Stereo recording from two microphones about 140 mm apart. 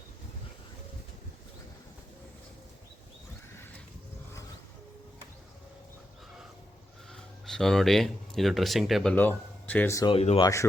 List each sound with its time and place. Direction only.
7.1 s speech: 5° left (ahead or behind)
9.1 s speech: 10° left (ahead or behind)
10.1 s speech: 45° left (ahead or behind)
10.4 s speech: 20° left (ahead or behind)